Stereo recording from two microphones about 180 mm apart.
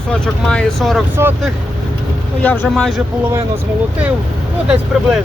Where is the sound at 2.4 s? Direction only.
10° left (ahead or behind).